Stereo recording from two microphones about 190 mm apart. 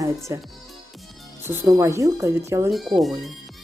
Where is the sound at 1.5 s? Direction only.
15° right (ahead or behind).